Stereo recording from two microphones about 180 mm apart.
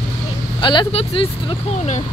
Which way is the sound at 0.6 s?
25° left (ahead or behind).